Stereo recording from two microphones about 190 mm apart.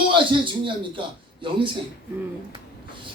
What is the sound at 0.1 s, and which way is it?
A man's voice, 25° right (ahead or behind).